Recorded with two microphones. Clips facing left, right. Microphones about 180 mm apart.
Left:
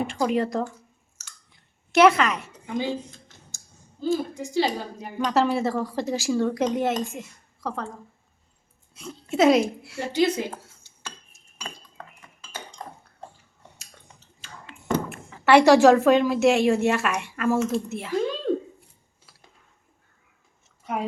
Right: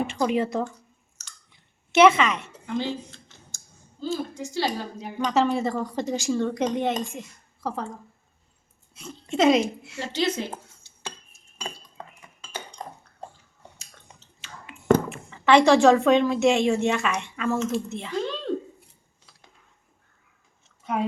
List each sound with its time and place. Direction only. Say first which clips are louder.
0.1 s speech: even; centre (ahead or behind)
1.9 s speech: even; centre (ahead or behind)
2.5 s a woman's voice: even; 15° left (ahead or behind)
4.0 s a woman's voice: left 4 dB; 15° left (ahead or behind)
5.1 s speech: even; centre (ahead or behind)
9.0 s speech: left 2 dB; centre (ahead or behind)
10.0 s a woman's voice: left 4 dB; 15° left (ahead or behind)
11.5 s dishes: right 2 dB; 25° right (ahead or behind)
14.7 s a sound: even; 15° right (ahead or behind)
15.3 s speech: left 2 dB; 5° left (ahead or behind)